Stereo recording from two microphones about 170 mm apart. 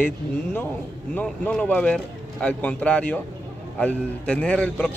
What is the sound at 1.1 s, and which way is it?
A man's voice, 5° left (ahead or behind).